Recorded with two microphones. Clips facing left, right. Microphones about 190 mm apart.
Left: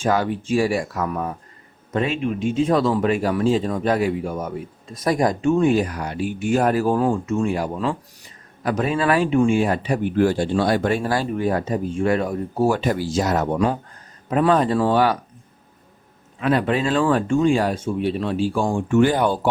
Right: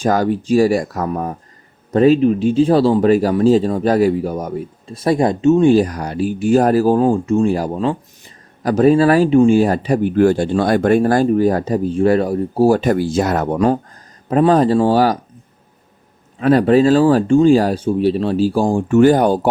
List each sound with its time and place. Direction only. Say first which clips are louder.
0.0 s speech: right 5 dB; 40° right (ahead or behind)
12.8 s speech: right 5 dB; 50° right (ahead or behind)
16.4 s speech: right 8 dB; 40° right (ahead or behind)